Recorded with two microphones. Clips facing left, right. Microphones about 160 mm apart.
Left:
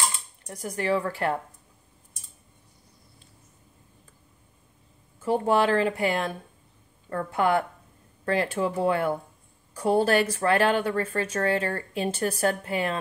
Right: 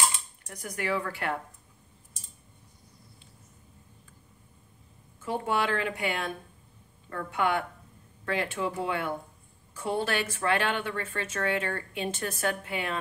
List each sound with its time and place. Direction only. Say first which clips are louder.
0.5 s speech: left 5 dB; 30° left (ahead or behind)
5.2 s speech: left 7 dB; 35° left (ahead or behind)